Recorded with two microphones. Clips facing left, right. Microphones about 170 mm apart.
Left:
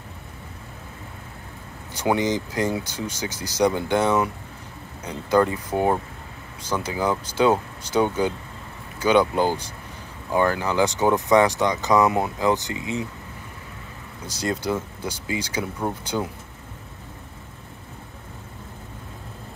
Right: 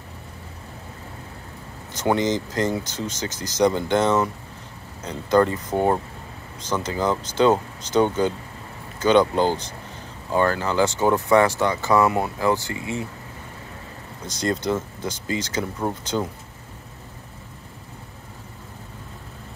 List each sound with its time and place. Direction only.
2.0 s speech: 10° left (ahead or behind)
14.2 s speech: 10° left (ahead or behind)